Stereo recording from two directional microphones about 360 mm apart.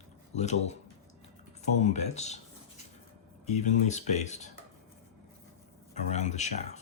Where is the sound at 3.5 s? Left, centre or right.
Centre.